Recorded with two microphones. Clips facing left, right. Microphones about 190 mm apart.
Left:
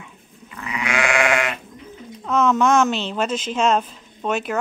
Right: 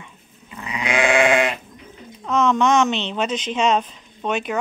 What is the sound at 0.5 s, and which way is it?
Goat, 20° right (ahead or behind).